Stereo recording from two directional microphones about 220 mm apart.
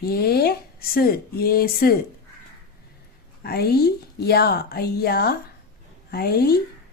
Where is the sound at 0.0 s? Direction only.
45° left (ahead or behind).